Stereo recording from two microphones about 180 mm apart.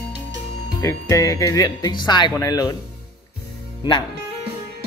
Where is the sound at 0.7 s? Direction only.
15° left (ahead or behind).